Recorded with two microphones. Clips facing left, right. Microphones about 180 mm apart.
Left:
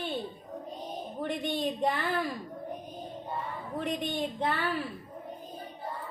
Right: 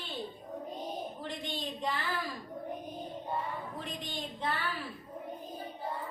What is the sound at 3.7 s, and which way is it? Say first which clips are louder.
Speech: left 8 dB; 60° left (ahead or behind).